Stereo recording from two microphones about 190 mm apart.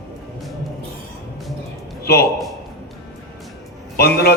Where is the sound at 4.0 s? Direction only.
55° left (ahead or behind).